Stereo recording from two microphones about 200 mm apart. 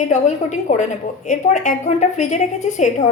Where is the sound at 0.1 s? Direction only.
35° left (ahead or behind).